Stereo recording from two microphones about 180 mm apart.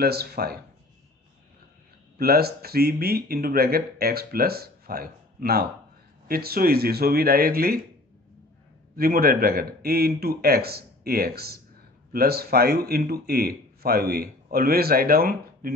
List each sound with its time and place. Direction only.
0.0 s a man's voice: 60° right (ahead or behind)
2.1 s a man's voice: 60° right (ahead or behind)
8.9 s a man's voice: 55° right (ahead or behind)